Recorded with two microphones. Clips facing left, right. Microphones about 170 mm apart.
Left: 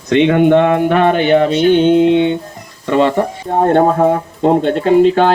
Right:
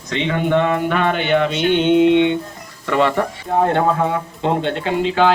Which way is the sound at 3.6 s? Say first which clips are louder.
Left 6 dB; 40° left (ahead or behind).